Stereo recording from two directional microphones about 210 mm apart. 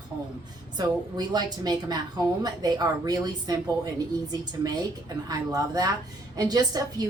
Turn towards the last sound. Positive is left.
turn(degrees=-20)  # may be behind; listen again after turning